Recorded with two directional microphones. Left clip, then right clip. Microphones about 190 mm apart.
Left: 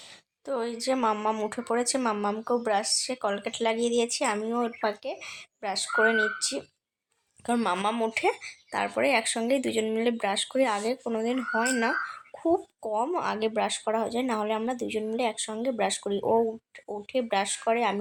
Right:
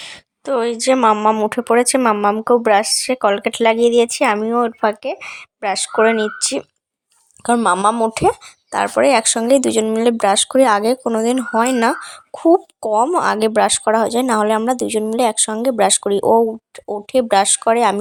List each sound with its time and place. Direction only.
0.0 s speech: 40° right (ahead or behind)